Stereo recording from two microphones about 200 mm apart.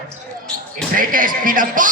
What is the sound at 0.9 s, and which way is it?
Speech, 45° right (ahead or behind).